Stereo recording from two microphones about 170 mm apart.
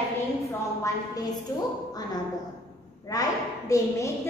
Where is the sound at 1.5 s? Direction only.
20° left (ahead or behind).